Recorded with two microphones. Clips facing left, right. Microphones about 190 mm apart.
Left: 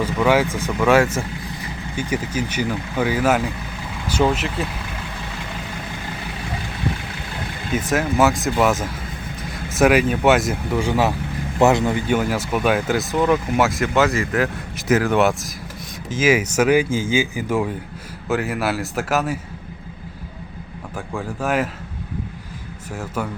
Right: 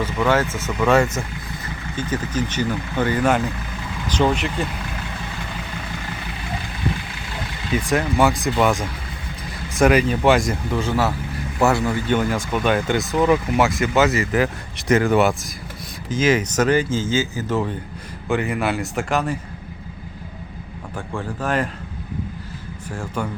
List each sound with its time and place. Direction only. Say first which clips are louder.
0.0 s speech: left 2 dB; 10° left (ahead or behind)
7.7 s speech: even; 5° left (ahead or behind); by 12.1 s 20° left (ahead or behind)
12.1 s speech: even; 5° left (ahead or behind)
20.9 s speech: even; 5° left (ahead or behind)
22.9 s speech: even; 5° left (ahead or behind)